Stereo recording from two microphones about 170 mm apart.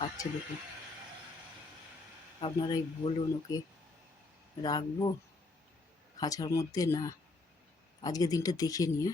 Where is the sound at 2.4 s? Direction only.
30° left (ahead or behind).